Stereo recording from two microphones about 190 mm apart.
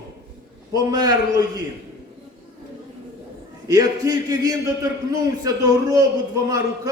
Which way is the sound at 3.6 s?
20° right (ahead or behind).